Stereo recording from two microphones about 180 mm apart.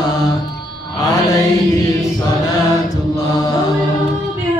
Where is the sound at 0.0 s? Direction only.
20° left (ahead or behind).